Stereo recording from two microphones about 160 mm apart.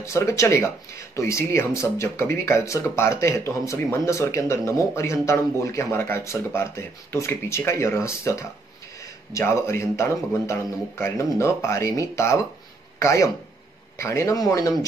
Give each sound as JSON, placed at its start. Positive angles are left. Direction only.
{"t": 0.0, "sound": "speech", "side_deg": 20}